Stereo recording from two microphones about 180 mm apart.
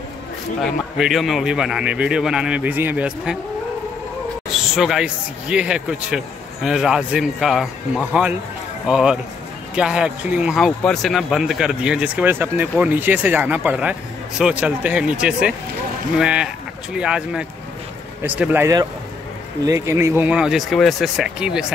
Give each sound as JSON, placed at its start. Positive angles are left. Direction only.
{"t": 0.6, "sound": "speech", "side_deg": 0}
{"t": 4.7, "sound": "speech", "side_deg": -5}